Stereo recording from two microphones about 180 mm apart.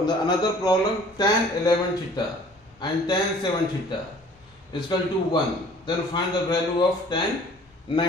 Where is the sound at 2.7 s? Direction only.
25° left (ahead or behind).